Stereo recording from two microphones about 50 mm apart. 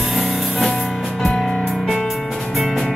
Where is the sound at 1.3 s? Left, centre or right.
Centre.